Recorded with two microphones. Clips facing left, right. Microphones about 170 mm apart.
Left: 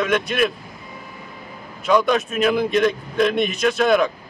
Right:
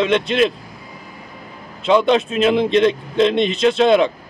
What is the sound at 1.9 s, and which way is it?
A man's voice, 25° right (ahead or behind).